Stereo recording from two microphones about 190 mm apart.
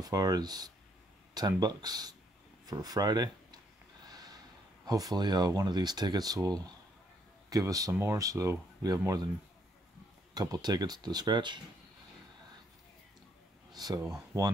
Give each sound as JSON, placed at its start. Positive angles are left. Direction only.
{"t": 0.0, "sound": "speech", "side_deg": -20}
{"t": 4.1, "sound": "snort", "side_deg": -20}
{"t": 4.8, "sound": "speech", "side_deg": -20}
{"t": 10.3, "sound": "speech", "side_deg": -20}
{"t": 13.7, "sound": "a sound", "side_deg": -20}